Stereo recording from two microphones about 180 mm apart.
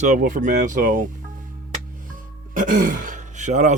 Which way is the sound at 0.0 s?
45° right (ahead or behind).